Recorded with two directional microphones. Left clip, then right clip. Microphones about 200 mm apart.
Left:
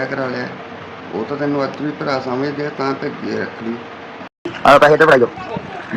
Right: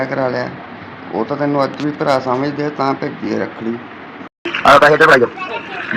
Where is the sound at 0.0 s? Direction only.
20° right (ahead or behind).